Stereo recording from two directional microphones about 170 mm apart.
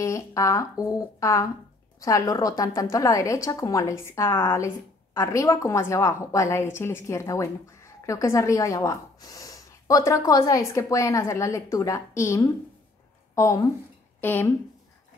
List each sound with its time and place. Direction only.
0.0 s a woman's voice: 20° left (ahead or behind)